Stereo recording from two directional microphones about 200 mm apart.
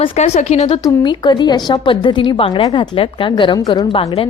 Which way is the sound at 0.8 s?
20° left (ahead or behind).